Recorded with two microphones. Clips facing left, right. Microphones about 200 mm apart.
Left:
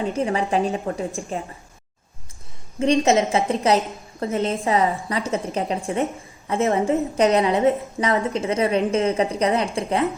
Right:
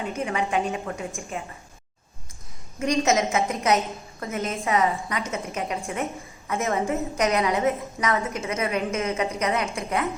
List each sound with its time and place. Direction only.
0.0 s a woman's voice: 30° left (ahead or behind)
2.7 s a woman's voice: 30° left (ahead or behind)